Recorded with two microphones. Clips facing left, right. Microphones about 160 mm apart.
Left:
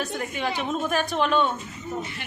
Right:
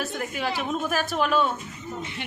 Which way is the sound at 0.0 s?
Centre (ahead or behind).